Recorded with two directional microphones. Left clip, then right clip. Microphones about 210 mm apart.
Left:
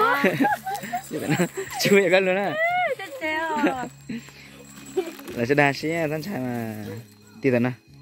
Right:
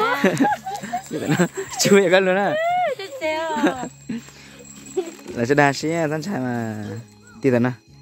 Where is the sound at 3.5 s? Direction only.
15° right (ahead or behind).